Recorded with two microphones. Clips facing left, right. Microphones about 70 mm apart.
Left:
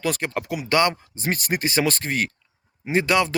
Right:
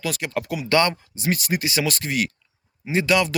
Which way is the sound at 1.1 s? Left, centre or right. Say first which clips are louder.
Right 1 dB; left.